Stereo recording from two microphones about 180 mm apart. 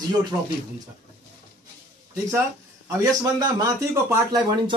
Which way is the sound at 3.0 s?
20° right (ahead or behind).